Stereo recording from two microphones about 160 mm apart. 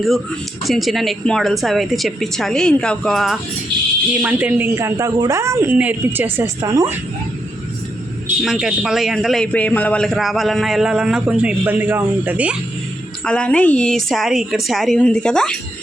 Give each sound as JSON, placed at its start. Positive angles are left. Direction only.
{"t": 0.6, "sound": "a man's voice", "side_deg": 0}
{"t": 4.1, "sound": "speech", "side_deg": -10}
{"t": 8.4, "sound": "a man's voice", "side_deg": 0}
{"t": 13.2, "sound": "a man's voice", "side_deg": 5}